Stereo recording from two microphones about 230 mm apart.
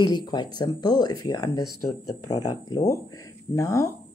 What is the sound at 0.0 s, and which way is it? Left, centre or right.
Speech, centre.